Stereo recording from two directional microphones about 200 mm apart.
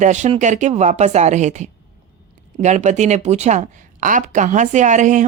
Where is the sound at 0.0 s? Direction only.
35° right (ahead or behind).